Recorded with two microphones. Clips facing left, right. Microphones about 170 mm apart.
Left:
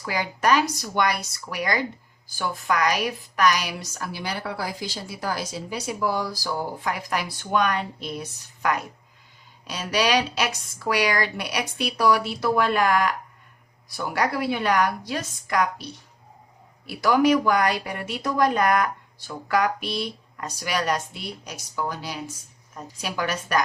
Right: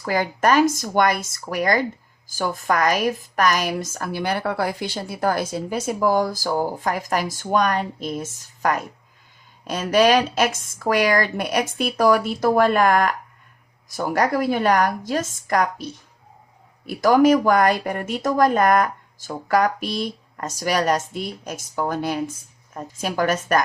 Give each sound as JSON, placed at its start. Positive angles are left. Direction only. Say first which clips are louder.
{"t": 0.0, "sound": "speech", "louder": "right 4 dB", "side_deg": -50}